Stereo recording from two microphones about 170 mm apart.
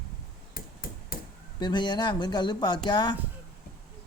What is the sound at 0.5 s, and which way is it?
Hammer, 60° left (ahead or behind).